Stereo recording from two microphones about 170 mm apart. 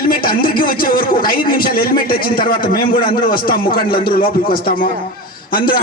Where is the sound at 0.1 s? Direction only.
55° left (ahead or behind).